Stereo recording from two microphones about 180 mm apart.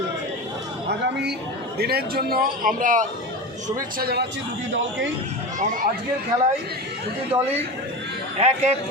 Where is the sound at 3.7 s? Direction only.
60° right (ahead or behind).